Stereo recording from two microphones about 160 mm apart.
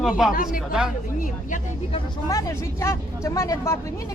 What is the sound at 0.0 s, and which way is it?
Speech, centre (ahead or behind).